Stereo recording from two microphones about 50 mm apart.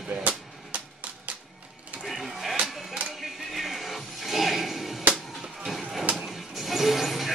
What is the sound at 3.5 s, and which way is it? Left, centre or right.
Music, centre.